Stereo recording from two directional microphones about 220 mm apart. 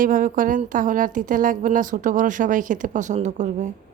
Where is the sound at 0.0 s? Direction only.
40° right (ahead or behind).